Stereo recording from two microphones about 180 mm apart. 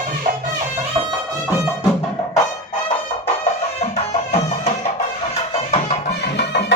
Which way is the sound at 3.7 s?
35° left (ahead or behind).